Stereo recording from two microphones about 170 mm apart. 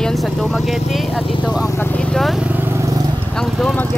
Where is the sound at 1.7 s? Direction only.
10° left (ahead or behind); by 3.0 s 15° right (ahead or behind).